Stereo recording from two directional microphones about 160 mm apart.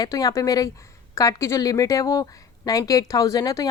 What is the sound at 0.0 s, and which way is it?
Speech, 25° left (ahead or behind).